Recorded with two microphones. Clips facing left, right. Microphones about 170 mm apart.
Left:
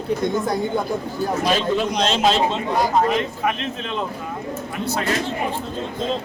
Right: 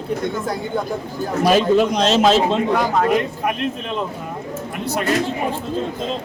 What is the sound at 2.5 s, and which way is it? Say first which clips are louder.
Speech: right 3 dB; 65° right (ahead or behind).